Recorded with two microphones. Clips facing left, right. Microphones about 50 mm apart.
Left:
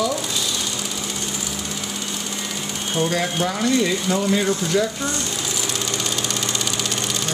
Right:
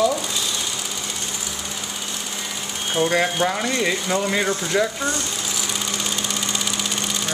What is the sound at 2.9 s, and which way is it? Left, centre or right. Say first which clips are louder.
Speech: right 2 dB; centre.